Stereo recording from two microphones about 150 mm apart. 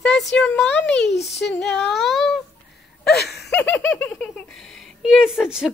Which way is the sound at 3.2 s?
90° left.